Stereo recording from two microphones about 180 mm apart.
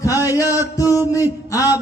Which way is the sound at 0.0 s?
20° left (ahead or behind).